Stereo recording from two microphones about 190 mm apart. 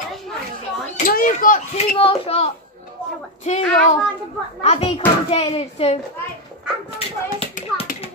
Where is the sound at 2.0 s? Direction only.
30° left (ahead or behind).